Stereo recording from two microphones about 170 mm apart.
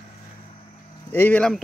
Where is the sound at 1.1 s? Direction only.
10° left (ahead or behind).